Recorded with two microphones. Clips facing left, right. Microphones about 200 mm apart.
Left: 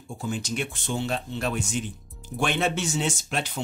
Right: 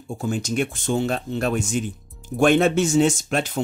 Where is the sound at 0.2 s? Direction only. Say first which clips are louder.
Right 6 dB; 50° right (ahead or behind).